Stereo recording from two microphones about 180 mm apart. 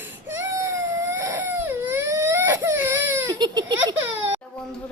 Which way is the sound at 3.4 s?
25° right (ahead or behind).